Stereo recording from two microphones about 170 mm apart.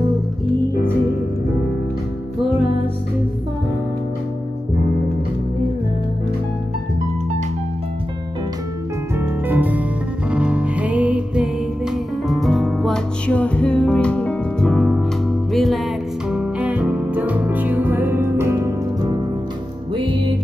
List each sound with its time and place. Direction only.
9.2 s music: 10° right (ahead or behind)
19.9 s music: 30° right (ahead or behind)